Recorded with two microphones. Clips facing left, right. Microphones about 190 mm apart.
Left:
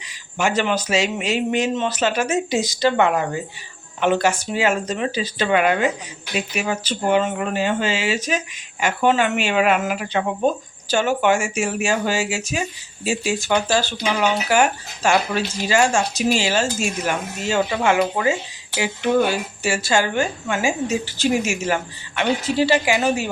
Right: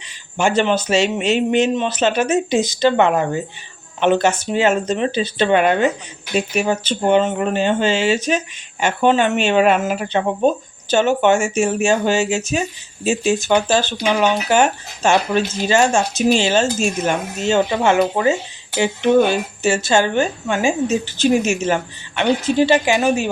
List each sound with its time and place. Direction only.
0.3 s speech: 30° right (ahead or behind)